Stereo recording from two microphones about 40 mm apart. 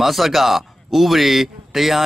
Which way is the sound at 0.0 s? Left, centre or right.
Centre.